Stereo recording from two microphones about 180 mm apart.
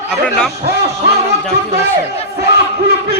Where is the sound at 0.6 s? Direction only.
60° right (ahead or behind).